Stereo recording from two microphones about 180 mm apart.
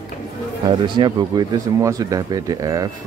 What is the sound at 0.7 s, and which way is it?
Speech, 25° right (ahead or behind).